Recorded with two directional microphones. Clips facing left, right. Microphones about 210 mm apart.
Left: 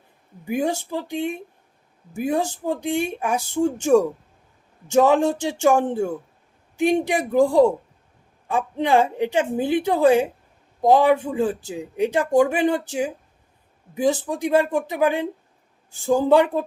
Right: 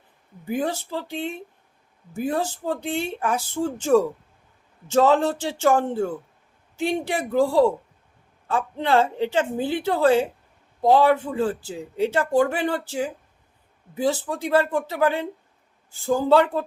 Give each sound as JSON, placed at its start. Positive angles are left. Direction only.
{"t": 0.4, "sound": "speech", "side_deg": 15}